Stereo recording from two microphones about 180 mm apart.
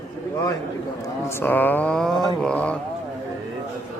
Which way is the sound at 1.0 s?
15° left (ahead or behind).